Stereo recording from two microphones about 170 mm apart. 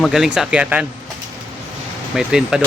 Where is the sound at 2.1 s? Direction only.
5° right (ahead or behind).